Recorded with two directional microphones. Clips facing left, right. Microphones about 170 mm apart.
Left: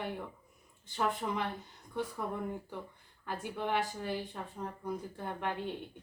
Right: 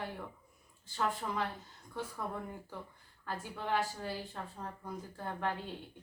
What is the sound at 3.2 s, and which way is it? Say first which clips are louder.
A woman's voice: left 3 dB; 15° left (ahead or behind).